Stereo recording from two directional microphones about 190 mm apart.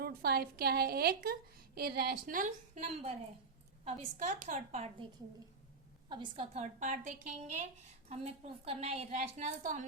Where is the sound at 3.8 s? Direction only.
35° right (ahead or behind).